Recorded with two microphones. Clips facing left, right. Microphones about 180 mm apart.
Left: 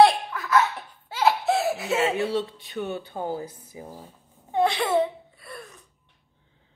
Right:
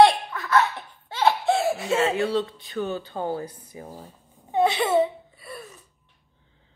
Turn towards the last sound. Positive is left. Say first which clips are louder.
# right 2 dB
turn(degrees=-5)  # may be behind; listen again after turning